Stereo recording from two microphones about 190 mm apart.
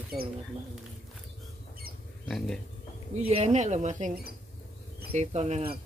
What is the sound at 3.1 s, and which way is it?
Speech, 35° right (ahead or behind).